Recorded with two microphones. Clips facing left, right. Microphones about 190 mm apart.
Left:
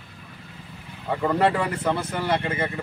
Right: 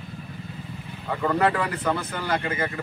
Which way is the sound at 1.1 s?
15° left (ahead or behind).